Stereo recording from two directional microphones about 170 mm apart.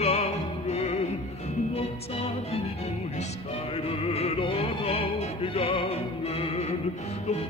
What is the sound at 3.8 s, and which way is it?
Music, 35° left (ahead or behind).